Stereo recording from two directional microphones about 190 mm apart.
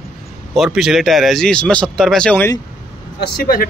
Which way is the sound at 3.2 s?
55° left (ahead or behind).